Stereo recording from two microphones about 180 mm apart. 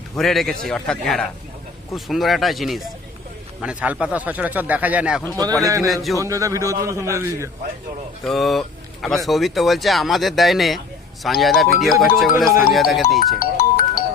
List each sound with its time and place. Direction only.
0.2 s speech: centre (ahead or behind)
5.3 s speech: 20° right (ahead or behind)
5.9 s speech: centre (ahead or behind)
6.1 s speech: 20° right (ahead or behind)
8.2 s speech: centre (ahead or behind)
13.1 s music: 50° left (ahead or behind)